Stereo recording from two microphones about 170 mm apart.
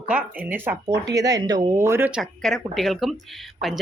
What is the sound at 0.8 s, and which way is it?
Speech, 25° right (ahead or behind).